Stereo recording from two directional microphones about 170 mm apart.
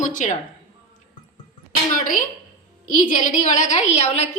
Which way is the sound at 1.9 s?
50° left (ahead or behind).